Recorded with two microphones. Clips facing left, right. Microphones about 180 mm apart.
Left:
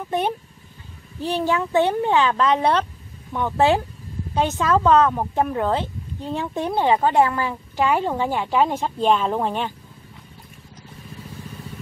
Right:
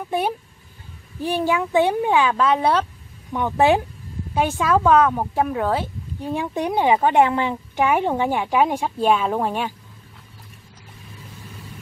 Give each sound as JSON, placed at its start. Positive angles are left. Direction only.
{"t": 1.2, "sound": "speech", "side_deg": -10}